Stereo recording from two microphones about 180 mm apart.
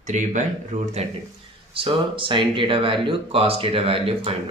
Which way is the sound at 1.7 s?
30° right (ahead or behind).